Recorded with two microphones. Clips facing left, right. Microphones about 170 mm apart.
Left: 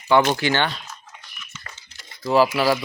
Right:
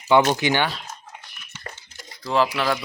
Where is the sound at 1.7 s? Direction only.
45° right (ahead or behind).